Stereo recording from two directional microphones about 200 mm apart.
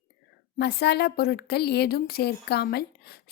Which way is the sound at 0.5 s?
55° left (ahead or behind).